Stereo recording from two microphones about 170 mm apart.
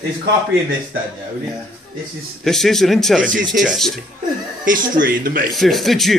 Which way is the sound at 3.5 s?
Centre (ahead or behind).